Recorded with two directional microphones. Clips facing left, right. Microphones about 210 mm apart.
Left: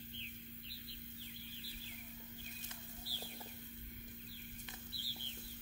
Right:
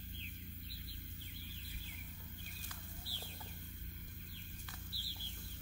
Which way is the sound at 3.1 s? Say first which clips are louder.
Left 2 dB; 15° left (ahead or behind).